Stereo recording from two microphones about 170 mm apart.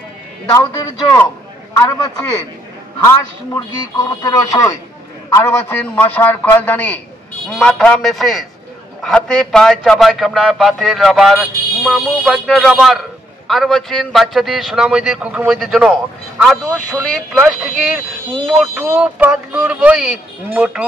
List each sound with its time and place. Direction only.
0.5 s a man's voice: 20° left (ahead or behind)
4.0 s a man's voice: 20° left (ahead or behind); by 20.8 s 5° right (ahead or behind)